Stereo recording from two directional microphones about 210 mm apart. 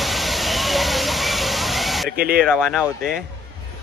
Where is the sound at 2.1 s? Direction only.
45° right (ahead or behind).